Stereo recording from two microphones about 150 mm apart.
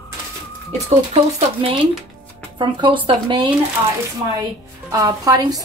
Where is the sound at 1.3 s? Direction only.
35° right (ahead or behind).